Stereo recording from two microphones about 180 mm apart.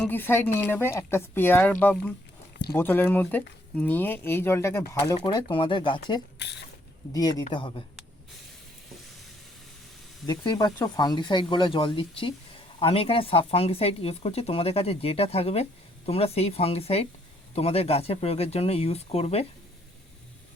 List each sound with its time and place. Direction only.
0.0 s speech: 10° left (ahead or behind)
5.2 s speech: 25° left (ahead or behind)
10.2 s speech: 25° left (ahead or behind)